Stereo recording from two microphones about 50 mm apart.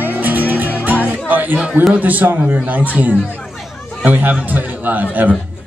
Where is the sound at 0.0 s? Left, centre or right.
Right.